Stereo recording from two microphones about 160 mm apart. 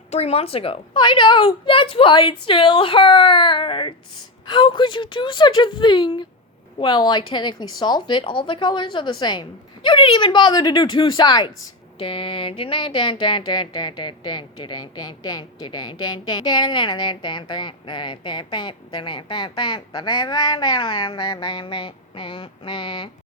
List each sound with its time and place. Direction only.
0.1 s a woman's voice: 40° left (ahead or behind)